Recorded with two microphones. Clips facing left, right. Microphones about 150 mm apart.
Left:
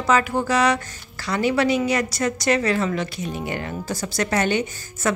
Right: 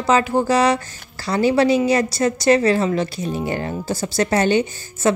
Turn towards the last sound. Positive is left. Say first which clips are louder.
# right 5 dB
turn(degrees=-30)  # may be behind; listen again after turning